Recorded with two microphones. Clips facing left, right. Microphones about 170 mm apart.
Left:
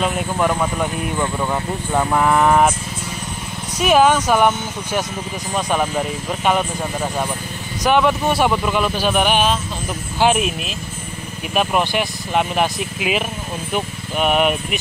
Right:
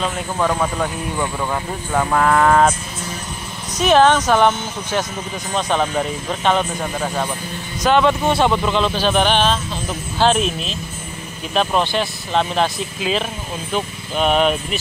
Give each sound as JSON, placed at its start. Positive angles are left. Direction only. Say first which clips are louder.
{"t": 0.0, "sound": "speech", "louder": "left 2 dB", "side_deg": 15}
{"t": 1.9, "sound": "speech", "louder": "even", "side_deg": 15}
{"t": 3.7, "sound": "speech", "louder": "right 1 dB", "side_deg": 10}